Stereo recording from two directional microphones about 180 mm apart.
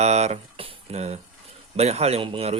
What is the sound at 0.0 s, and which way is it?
Speech, 40° right (ahead or behind).